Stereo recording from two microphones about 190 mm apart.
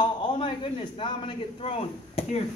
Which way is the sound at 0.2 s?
25° left (ahead or behind).